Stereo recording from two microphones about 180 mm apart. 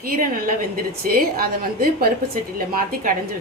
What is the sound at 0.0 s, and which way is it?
A woman's voice, 50° right (ahead or behind).